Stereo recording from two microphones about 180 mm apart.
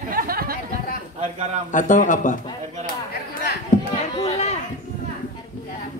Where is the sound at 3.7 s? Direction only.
45° left (ahead or behind).